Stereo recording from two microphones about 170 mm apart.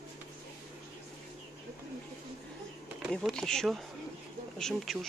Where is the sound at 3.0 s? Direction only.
Centre (ahead or behind).